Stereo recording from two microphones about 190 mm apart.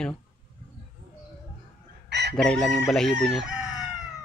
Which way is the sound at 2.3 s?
5° left (ahead or behind).